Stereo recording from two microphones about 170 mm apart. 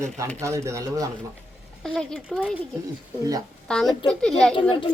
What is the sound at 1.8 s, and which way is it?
Speech, centre (ahead or behind).